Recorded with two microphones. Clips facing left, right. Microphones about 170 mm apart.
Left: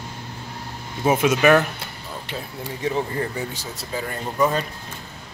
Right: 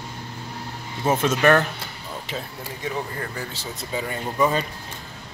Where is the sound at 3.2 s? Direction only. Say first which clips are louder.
Left 5 dB; 20° left (ahead or behind).